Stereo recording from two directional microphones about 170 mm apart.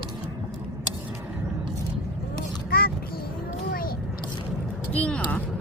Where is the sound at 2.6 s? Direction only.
60° left (ahead or behind).